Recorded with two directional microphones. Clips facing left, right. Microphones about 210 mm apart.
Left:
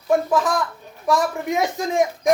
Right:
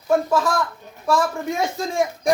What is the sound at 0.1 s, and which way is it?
Speech, 15° left (ahead or behind).